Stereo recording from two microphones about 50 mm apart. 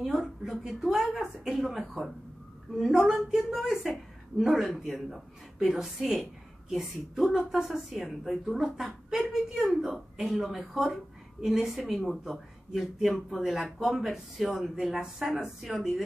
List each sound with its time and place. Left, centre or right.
0.0 s speech: centre